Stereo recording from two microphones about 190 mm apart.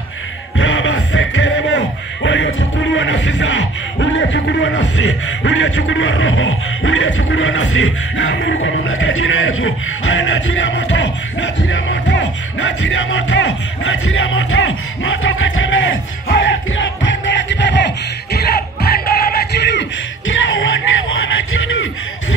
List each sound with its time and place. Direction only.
0.6 s speech: 85° left
16.3 s music: 55° left (ahead or behind)
16.7 s music: 80° left